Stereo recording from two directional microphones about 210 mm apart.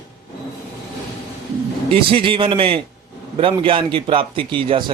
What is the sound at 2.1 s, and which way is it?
A man's voice, 25° right (ahead or behind).